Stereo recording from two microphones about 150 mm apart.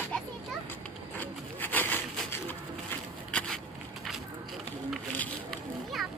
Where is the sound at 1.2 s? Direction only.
10° left (ahead or behind).